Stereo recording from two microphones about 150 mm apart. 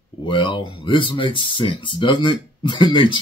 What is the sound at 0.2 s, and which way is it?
Speech, 35° left (ahead or behind).